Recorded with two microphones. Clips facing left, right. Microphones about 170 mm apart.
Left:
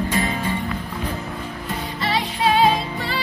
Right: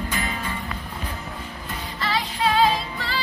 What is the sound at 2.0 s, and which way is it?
Music, 25° left (ahead or behind).